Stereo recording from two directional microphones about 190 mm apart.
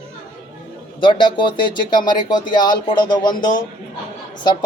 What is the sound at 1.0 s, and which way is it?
A man's voice, 25° left (ahead or behind).